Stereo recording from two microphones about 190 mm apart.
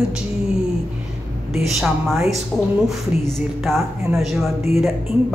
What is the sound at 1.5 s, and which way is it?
Speech, centre (ahead or behind).